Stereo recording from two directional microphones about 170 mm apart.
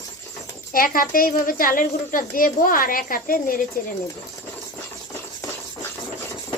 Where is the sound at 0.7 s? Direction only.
55° left (ahead or behind).